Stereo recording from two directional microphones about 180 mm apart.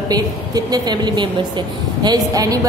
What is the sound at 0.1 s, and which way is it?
A woman's voice, 20° right (ahead or behind).